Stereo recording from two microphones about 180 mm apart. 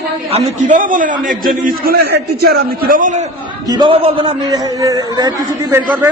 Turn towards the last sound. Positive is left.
turn(degrees=-15)  # may be behind; listen again after turning